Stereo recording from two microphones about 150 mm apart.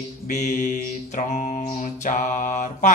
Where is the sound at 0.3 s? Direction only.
55° left (ahead or behind).